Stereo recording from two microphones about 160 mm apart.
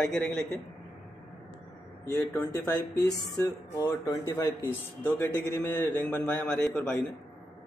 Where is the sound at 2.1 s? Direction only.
20° left (ahead or behind).